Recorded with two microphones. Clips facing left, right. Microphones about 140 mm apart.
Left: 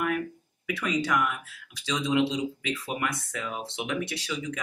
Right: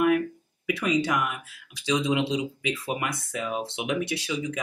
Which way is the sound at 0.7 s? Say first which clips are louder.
Right 3 dB; 15° right (ahead or behind).